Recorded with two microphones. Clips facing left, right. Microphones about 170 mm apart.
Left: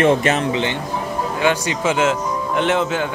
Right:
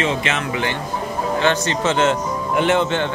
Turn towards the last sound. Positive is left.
turn(degrees=5)  # may be behind; listen again after turning